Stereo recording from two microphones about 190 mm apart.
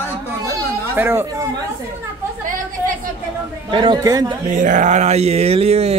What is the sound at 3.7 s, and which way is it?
Speech, 25° right (ahead or behind).